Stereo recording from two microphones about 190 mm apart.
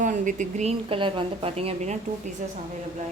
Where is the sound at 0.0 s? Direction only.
40° right (ahead or behind).